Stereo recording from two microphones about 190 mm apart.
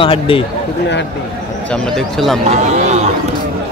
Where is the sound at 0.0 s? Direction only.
30° left (ahead or behind).